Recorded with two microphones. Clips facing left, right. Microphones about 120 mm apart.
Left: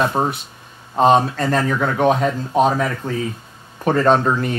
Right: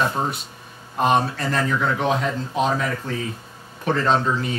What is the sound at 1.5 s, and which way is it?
Speech, 50° left (ahead or behind).